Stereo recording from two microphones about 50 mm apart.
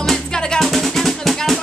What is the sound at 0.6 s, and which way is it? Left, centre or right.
Music, centre.